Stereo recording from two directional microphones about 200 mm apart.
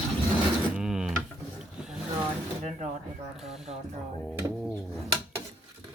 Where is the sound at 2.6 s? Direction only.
35° right (ahead or behind).